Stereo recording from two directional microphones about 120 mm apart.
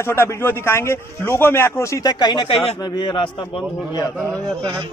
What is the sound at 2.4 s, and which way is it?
Speech, 55° left (ahead or behind).